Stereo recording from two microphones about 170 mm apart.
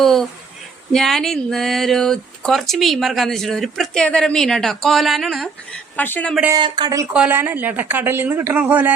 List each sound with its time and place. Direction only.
0.0 s speech: centre (ahead or behind)
6.5 s speech: 25° right (ahead or behind)
7.1 s speech: 10° right (ahead or behind)